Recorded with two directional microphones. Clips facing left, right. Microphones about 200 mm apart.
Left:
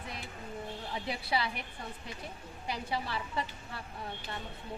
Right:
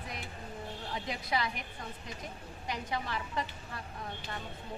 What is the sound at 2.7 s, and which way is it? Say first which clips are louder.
Speech: left 1 dB; 30° left (ahead or behind).